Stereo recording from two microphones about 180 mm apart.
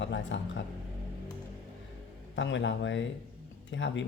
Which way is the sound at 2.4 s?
90° left.